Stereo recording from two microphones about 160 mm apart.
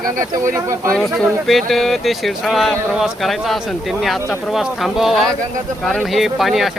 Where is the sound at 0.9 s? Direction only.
Centre (ahead or behind).